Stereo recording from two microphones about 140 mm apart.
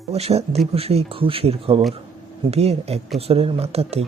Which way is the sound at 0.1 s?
50° right (ahead or behind).